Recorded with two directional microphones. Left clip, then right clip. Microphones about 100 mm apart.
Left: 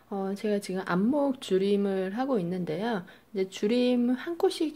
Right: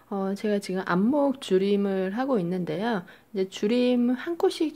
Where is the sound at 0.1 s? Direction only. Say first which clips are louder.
Right 2 dB; 20° right (ahead or behind).